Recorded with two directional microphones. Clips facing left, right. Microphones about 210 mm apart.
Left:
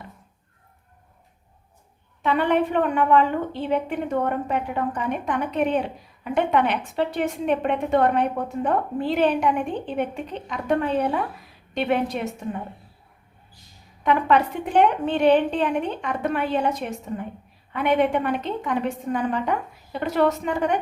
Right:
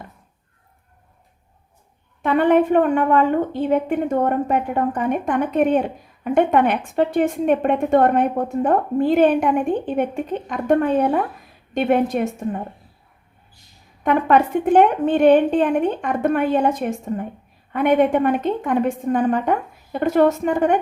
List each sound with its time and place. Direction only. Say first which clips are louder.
2.2 s a woman's voice: right 5 dB; 50° right (ahead or behind)
14.0 s a woman's voice: right 3 dB; 50° right (ahead or behind)